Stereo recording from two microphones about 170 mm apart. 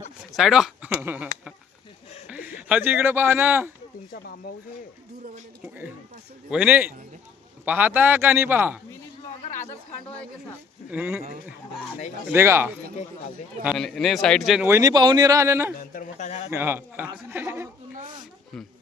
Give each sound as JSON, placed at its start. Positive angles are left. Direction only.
{"t": 0.3, "sound": "a man's voice", "side_deg": 0}
{"t": 5.6, "sound": "a sound", "side_deg": -10}
{"t": 6.5, "sound": "a man's voice", "side_deg": -10}
{"t": 10.1, "sound": "a sound", "side_deg": 5}
{"t": 10.9, "sound": "speech", "side_deg": -5}
{"t": 12.3, "sound": "a man's voice", "side_deg": -15}
{"t": 14.7, "sound": "speech", "side_deg": -20}
{"t": 15.8, "sound": "a sound", "side_deg": 50}
{"t": 16.5, "sound": "a man's voice", "side_deg": -15}